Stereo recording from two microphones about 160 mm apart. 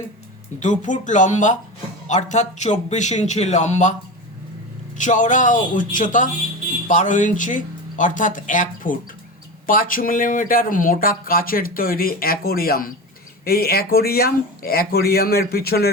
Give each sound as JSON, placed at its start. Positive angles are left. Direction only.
{"t": 0.6, "sound": "speech", "side_deg": 50}
{"t": 4.9, "sound": "speech", "side_deg": 50}